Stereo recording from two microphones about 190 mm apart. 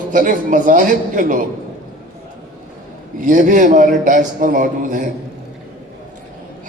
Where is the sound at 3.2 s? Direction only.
45° right (ahead or behind).